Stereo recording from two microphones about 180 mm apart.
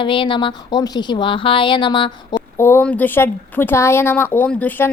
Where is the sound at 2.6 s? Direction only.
10° left (ahead or behind).